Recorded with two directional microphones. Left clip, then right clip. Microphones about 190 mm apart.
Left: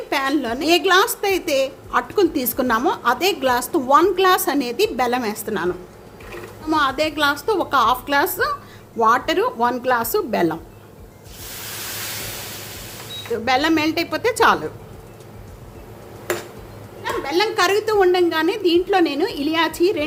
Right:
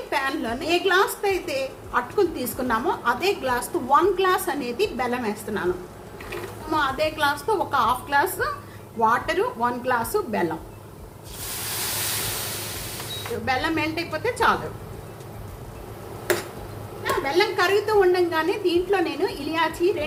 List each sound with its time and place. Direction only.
0.1 s a woman's voice: 60° left (ahead or behind)
6.7 s a woman's voice: 65° left (ahead or behind)
13.4 s a woman's voice: 55° left (ahead or behind)
17.0 s a woman's voice: 60° left (ahead or behind)